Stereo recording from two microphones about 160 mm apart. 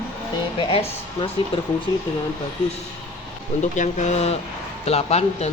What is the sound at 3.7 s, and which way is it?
A man's voice, 50° left (ahead or behind).